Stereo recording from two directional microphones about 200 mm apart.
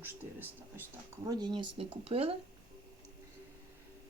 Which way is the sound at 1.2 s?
20° right (ahead or behind).